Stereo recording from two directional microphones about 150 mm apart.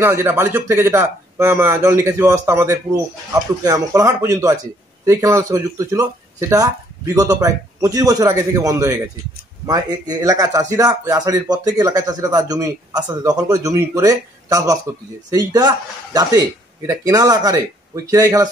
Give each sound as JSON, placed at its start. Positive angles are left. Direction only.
{"t": 0.0, "sound": "a man's voice", "side_deg": -15}
{"t": 7.2, "sound": "a man's voice", "side_deg": -20}